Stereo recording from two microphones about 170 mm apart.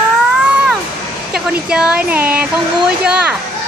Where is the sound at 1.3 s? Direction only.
5° right (ahead or behind).